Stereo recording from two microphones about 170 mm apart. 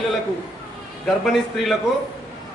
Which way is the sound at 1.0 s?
Centre (ahead or behind).